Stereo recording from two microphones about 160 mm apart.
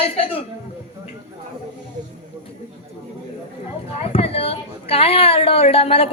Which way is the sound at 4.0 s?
40° left (ahead or behind).